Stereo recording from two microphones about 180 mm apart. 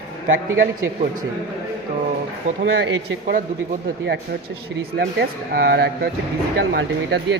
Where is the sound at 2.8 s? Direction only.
75° right (ahead or behind).